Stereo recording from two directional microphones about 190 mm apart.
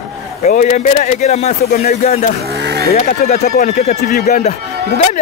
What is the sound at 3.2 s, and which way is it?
Speech, 45° left (ahead or behind).